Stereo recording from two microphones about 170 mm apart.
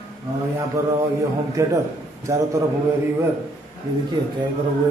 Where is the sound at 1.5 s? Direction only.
20° right (ahead or behind).